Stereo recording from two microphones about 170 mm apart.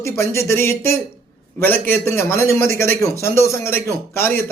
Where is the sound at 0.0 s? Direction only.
15° left (ahead or behind).